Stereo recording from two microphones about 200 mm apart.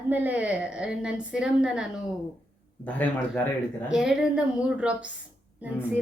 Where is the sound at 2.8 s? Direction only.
10° left (ahead or behind).